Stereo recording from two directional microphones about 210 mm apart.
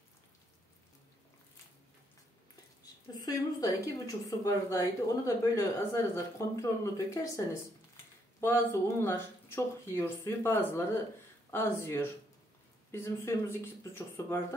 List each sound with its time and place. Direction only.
3.2 s a woman's voice: 15° left (ahead or behind)